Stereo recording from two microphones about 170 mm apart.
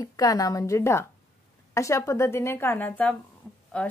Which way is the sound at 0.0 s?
20° left (ahead or behind).